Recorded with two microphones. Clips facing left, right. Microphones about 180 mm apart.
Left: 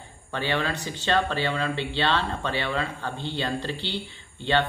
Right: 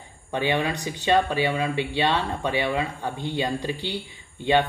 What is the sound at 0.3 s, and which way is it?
Speech, 15° right (ahead or behind).